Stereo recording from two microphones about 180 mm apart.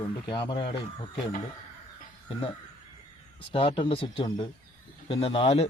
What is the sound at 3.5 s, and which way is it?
Speech, 30° left (ahead or behind).